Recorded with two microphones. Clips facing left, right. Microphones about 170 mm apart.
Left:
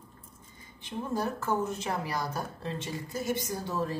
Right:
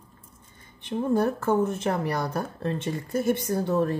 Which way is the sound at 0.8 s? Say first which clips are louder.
Right 8 dB; 60° right (ahead or behind).